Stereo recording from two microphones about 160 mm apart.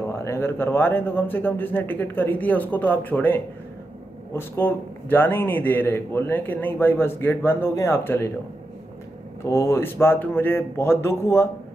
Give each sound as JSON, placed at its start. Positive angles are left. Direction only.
{"t": 0.1, "sound": "a man's voice", "side_deg": 15}
{"t": 9.5, "sound": "a man's voice", "side_deg": 15}